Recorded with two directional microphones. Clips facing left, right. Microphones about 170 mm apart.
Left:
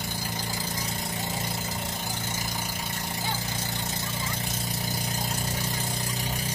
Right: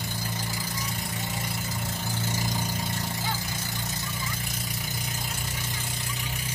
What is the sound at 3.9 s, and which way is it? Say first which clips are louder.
Vehicle: left 2 dB; 25° left (ahead or behind).